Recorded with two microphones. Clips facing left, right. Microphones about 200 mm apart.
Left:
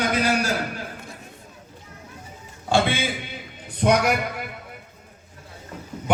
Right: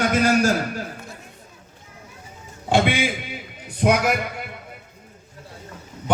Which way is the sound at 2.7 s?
15° right (ahead or behind).